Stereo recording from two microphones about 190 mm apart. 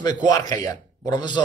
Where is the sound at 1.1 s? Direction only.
25° left (ahead or behind).